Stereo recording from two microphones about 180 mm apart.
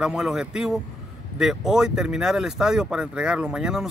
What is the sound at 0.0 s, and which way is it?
Speech, centre (ahead or behind).